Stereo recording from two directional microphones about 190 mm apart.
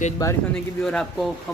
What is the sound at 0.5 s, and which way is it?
Speech, 5° left (ahead or behind).